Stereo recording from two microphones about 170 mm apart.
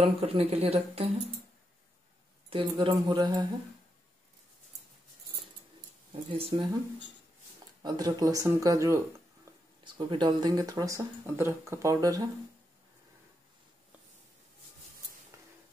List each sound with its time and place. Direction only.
0.0 s speech: 35° right (ahead or behind)
2.5 s speech: 30° right (ahead or behind)
6.3 s speech: 30° right (ahead or behind)
7.8 s speech: 25° right (ahead or behind)